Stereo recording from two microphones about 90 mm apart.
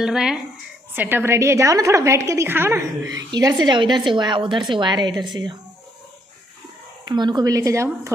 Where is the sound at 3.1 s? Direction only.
45° right (ahead or behind).